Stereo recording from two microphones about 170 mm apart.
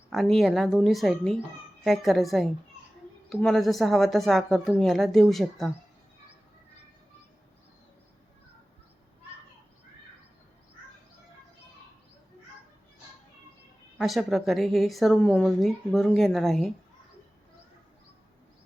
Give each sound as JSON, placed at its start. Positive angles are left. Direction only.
{"t": 0.1, "sound": "a woman's voice", "side_deg": 0}
{"t": 14.0, "sound": "a woman's voice", "side_deg": 0}